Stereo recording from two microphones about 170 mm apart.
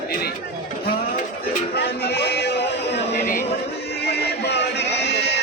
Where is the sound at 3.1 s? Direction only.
60° left (ahead or behind).